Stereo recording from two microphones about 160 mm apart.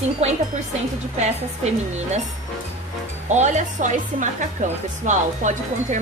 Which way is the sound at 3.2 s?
50° right (ahead or behind).